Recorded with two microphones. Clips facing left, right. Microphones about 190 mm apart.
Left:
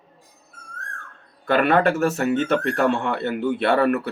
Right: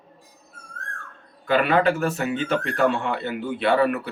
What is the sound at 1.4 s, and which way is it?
Speech, 50° left (ahead or behind).